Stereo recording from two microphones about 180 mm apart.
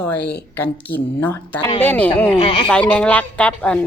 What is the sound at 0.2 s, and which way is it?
Speech, 65° left (ahead or behind).